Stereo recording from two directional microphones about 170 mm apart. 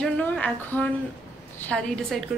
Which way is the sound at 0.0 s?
10° left (ahead or behind).